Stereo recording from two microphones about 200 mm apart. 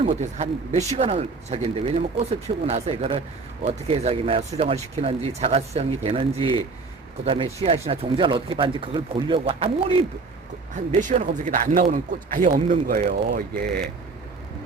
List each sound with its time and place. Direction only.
0.0 s speech: 30° right (ahead or behind)
12.9 s speech: 45° right (ahead or behind)